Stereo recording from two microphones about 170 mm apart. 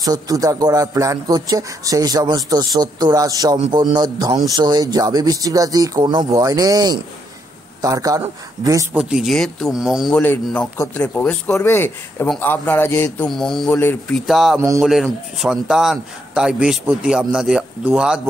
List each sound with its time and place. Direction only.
0.0 s a man's voice: 20° right (ahead or behind)
8.9 s a man's voice: 5° right (ahead or behind)
13.3 s a man's voice: centre (ahead or behind)